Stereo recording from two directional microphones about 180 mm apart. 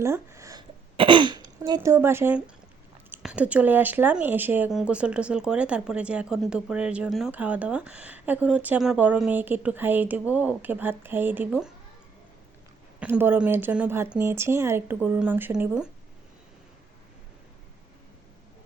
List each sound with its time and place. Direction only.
0.0 s a sound: 15° right (ahead or behind)
0.9 s speech: 25° right (ahead or behind); by 11.7 s 10° right (ahead or behind)
13.0 s speech: 10° right (ahead or behind)